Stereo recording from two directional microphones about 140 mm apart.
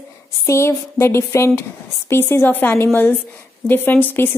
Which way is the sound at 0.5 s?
20° left (ahead or behind).